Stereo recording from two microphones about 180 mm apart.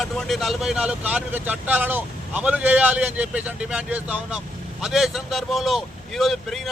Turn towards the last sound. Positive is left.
turn(degrees=0)  # may be behind; listen again after turning